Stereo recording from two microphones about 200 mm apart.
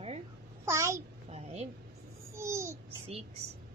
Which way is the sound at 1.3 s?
30° right (ahead or behind).